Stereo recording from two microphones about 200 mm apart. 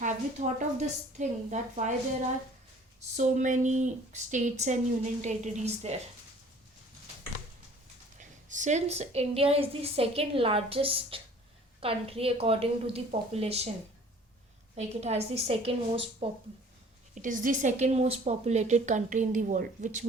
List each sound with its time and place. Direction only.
0.0 s speech: 35° right (ahead or behind)
3.2 s speech: 40° right (ahead or behind)
8.2 s a woman's voice: 40° right (ahead or behind)
14.8 s a woman's voice: 35° right (ahead or behind)
17.2 s speech: 40° right (ahead or behind)